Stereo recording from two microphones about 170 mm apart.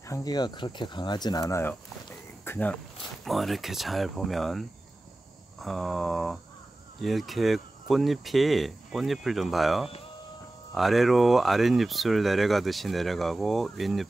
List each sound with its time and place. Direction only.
0.1 s speech: 20° left (ahead or behind)
3.3 s speech: centre (ahead or behind)